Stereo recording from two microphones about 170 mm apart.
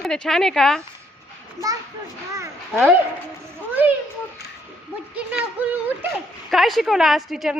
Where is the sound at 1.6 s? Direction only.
20° left (ahead or behind).